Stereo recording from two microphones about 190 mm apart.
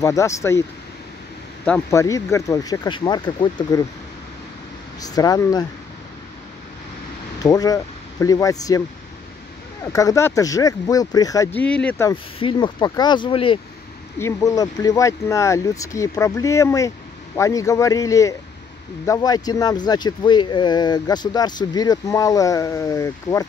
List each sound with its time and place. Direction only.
0.0 s speech: 15° left (ahead or behind)
1.9 s speech: 15° left (ahead or behind)
5.0 s speech: 20° left (ahead or behind)
7.3 s speech: 20° left (ahead or behind)
9.9 s speech: 15° left (ahead or behind)
11.6 s speech: 5° left (ahead or behind)
12.1 s speech: 25° left (ahead or behind)
14.1 s speech: 15° left (ahead or behind)